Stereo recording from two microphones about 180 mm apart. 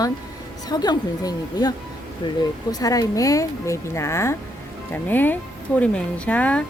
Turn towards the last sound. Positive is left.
turn(degrees=10)  # may be behind; listen again after turning